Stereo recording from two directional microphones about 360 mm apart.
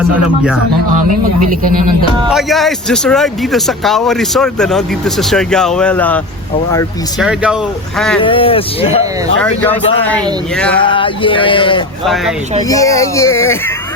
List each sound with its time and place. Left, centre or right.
1.5 s speech: right
2.3 s speech: centre
7.3 s speech: centre
8.2 s speech: centre
10.8 s speech: centre
12.0 s speech: centre